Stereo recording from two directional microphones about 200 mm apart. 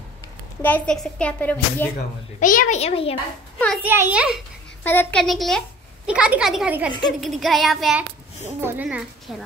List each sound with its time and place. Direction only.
0.6 s a woman's voice: 5° left (ahead or behind)
2.4 s a child's voice: 40° left (ahead or behind)
3.5 s a child's voice: 5° left (ahead or behind)
3.8 s speech: 10° right (ahead or behind)
4.8 s a woman's voice: 5° left (ahead or behind)
8.4 s a woman's voice: 10° right (ahead or behind)